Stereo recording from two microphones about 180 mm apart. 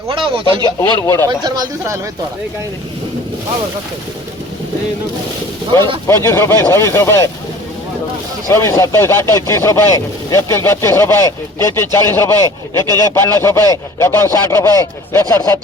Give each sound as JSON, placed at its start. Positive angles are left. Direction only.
{"t": 0.1, "sound": "speech", "side_deg": -30}
{"t": 0.9, "sound": "speech", "side_deg": 15}
{"t": 1.5, "sound": "speech", "side_deg": -20}
{"t": 6.1, "sound": "speech", "side_deg": 15}
{"t": 8.4, "sound": "speech", "side_deg": 20}